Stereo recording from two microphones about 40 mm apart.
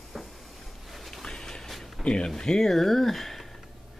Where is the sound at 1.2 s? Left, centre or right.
Centre.